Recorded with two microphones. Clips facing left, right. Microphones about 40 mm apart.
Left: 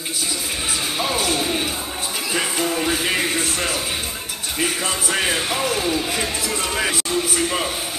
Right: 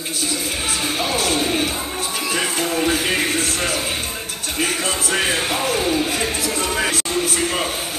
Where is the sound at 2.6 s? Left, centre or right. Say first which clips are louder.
Right 2 dB; centre.